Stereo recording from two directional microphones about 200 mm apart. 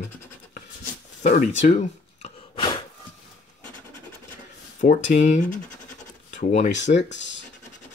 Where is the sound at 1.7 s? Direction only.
35° left (ahead or behind).